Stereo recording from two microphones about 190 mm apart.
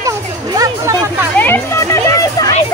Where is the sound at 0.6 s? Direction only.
15° right (ahead or behind).